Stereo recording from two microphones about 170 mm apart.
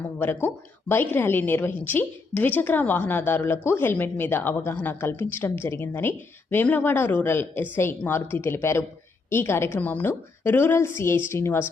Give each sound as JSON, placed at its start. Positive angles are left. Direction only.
{"t": 0.4, "sound": "a woman's voice", "side_deg": 15}